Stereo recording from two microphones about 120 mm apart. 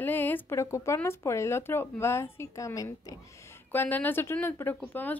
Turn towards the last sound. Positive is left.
turn(degrees=15)  # may be behind; listen again after turning